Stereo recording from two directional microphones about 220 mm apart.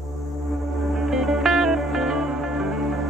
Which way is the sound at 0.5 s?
Centre (ahead or behind).